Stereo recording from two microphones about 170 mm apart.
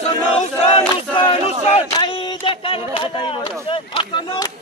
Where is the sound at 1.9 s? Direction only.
30° left (ahead or behind).